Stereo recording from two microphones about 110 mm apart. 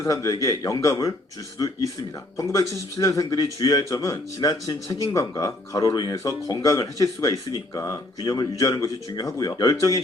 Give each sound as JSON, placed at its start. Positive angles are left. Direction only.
{"t": 0.0, "sound": "speech", "side_deg": 30}